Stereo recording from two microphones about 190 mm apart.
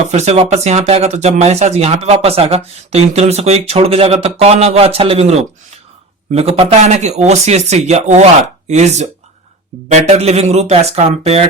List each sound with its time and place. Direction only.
0.1 s speech: 35° right (ahead or behind)